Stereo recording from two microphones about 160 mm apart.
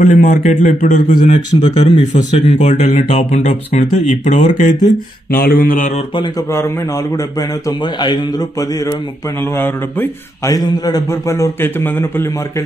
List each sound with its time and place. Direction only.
0.0 s speech: 50° left (ahead or behind)
1.5 s speech: 35° left (ahead or behind)
2.1 s speech: 50° left (ahead or behind)
4.7 s a man's voice: 25° left (ahead or behind)
5.3 s mantra: 65° left (ahead or behind)
6.1 s a man's voice: 30° left (ahead or behind)